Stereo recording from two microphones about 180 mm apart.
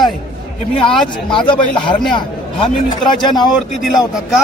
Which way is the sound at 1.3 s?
25° left (ahead or behind).